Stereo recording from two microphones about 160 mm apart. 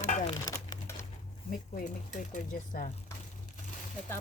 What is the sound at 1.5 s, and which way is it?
Speech, 55° left (ahead or behind).